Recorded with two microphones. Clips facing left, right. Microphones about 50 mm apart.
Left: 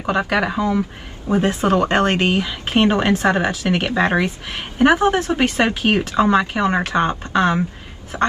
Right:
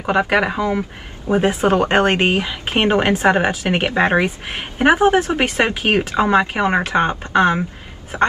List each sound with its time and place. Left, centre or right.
0.0 s speech: right